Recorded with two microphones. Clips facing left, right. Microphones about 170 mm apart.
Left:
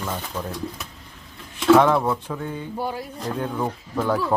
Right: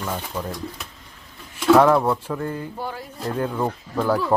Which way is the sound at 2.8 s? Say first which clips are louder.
Left 3 dB; 15° left (ahead or behind).